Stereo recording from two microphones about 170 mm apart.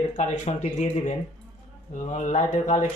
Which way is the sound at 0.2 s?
40° left (ahead or behind).